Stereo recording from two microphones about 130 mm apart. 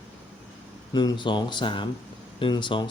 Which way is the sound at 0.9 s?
35° left (ahead or behind).